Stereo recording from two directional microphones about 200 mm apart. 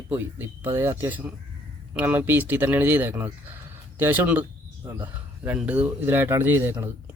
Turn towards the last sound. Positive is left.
turn(degrees=-15)  # may be behind; listen again after turning